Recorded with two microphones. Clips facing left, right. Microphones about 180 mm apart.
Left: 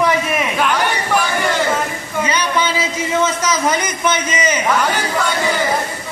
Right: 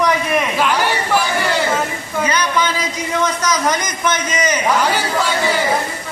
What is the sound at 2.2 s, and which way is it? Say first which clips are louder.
A man's voice: even; 10° left (ahead or behind).